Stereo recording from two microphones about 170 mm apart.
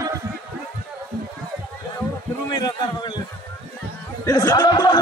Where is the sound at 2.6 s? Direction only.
25° left (ahead or behind).